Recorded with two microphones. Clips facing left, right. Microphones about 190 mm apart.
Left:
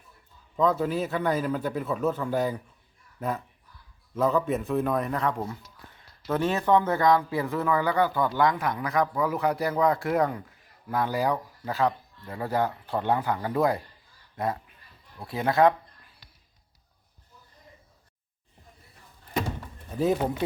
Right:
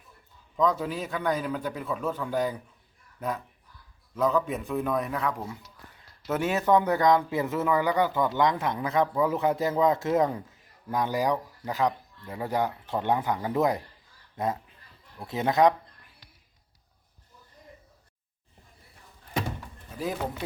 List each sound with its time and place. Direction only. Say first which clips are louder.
0.5 s a man's voice: left 2 dB; 5° left (ahead or behind)
6.2 s speech: even; 15° right (ahead or behind)